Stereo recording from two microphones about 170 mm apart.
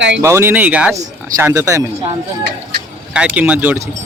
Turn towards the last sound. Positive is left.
turn(degrees=-10)  # may be behind; listen again after turning